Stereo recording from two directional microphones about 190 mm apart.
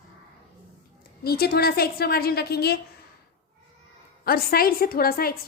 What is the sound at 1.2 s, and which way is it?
A woman's voice, 55° left (ahead or behind).